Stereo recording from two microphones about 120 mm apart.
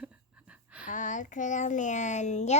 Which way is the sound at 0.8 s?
90° left.